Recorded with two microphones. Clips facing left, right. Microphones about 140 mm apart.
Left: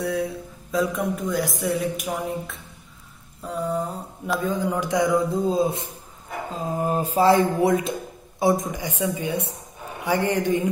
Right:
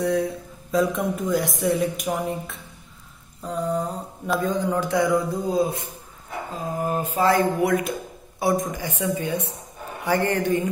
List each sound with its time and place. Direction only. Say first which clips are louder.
0.0 s speech: right 3 dB; 5° left (ahead or behind)